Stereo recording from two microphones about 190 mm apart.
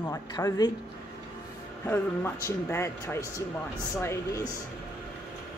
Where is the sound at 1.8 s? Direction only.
10° left (ahead or behind).